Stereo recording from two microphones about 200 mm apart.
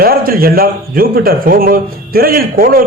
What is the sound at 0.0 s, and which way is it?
A man's voice, 50° right (ahead or behind).